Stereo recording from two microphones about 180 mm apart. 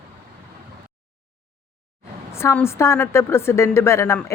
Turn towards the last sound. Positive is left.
turn(degrees=15)  # may be behind; listen again after turning